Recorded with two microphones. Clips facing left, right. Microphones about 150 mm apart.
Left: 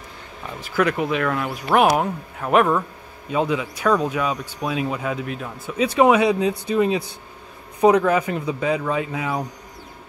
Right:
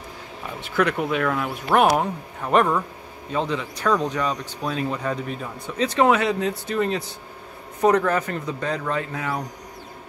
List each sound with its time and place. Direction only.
0.7 s speech: 5° left (ahead or behind)